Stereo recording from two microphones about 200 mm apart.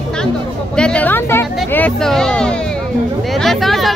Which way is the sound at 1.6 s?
10° left (ahead or behind).